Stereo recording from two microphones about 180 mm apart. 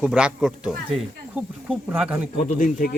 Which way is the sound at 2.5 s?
45° left (ahead or behind).